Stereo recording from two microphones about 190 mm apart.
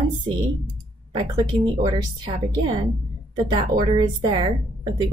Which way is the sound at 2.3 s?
25° right (ahead or behind).